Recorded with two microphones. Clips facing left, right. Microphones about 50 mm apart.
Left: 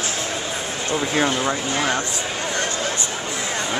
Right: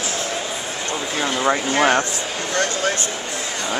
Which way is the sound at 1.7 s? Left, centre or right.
Right.